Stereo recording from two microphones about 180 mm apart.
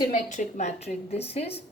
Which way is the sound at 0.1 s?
45° left (ahead or behind).